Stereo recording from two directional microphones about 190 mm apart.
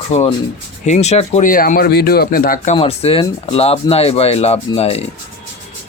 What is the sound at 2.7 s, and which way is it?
A man's voice, 30° left (ahead or behind).